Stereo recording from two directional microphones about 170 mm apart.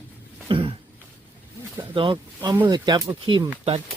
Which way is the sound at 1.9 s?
30° right (ahead or behind).